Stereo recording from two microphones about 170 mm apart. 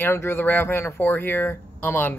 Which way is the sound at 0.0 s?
15° left (ahead or behind).